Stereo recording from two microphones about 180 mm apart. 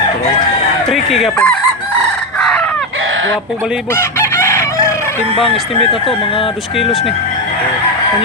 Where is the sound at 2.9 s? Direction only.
90° right.